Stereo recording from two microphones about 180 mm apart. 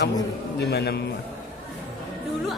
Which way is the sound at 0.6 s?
65° left (ahead or behind).